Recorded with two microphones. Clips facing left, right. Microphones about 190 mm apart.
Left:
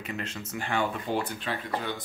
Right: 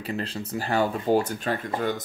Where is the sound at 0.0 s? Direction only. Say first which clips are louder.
Right 5 dB; 35° right (ahead or behind).